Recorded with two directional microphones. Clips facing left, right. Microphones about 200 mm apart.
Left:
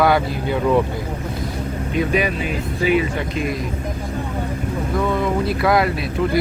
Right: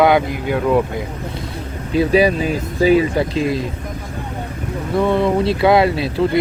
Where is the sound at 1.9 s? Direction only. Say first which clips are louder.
Right 6 dB; 35° right (ahead or behind).